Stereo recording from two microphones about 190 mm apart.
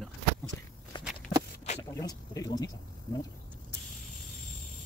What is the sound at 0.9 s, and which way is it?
Walk, 25° left (ahead or behind).